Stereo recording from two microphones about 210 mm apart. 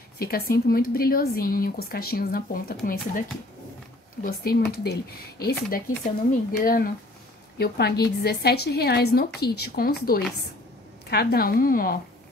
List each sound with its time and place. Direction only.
0.2 s a woman's voice: 45° left (ahead or behind)